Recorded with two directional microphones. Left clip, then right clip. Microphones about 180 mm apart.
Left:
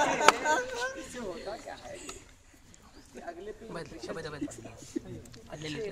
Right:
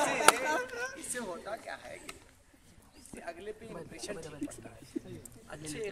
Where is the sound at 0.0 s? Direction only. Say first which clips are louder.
Left 2 dB; 45° right (ahead or behind).